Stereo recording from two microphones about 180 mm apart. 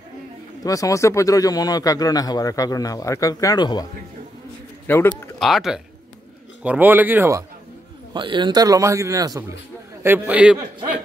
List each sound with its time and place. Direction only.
0.7 s speech: 20° left (ahead or behind)
4.8 s a man's voice: 10° left (ahead or behind)
5.4 s speech: centre (ahead or behind)
8.1 s a man's voice: 25° right (ahead or behind); by 10.6 s 5° right (ahead or behind)